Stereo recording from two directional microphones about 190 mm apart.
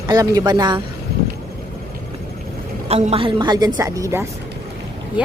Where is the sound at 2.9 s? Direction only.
30° right (ahead or behind); by 4.2 s 15° right (ahead or behind).